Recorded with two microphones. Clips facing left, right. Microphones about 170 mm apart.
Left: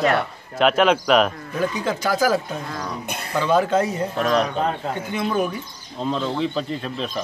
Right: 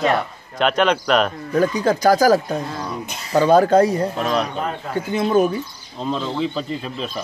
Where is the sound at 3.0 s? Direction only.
55° left (ahead or behind).